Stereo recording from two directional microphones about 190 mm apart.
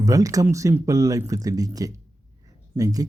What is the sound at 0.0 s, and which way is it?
Speech, 15° right (ahead or behind).